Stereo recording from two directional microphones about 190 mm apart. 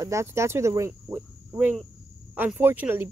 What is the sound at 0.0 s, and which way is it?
Speech, 15° right (ahead or behind).